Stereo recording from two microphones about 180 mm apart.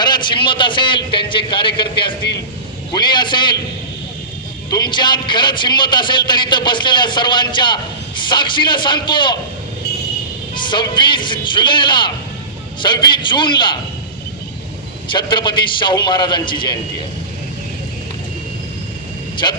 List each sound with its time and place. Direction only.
0.0 s a man's voice: 25° left (ahead or behind)
4.7 s a man's voice: 25° left (ahead or behind)
10.5 s a man's voice: 25° left (ahead or behind)
15.1 s a man's voice: 25° left (ahead or behind)